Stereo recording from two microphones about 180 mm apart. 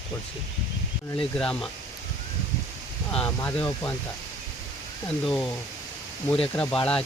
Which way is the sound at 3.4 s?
15° left (ahead or behind).